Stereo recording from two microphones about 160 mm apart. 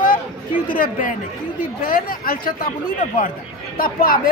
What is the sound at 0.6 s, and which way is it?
Speech, 60° left (ahead or behind).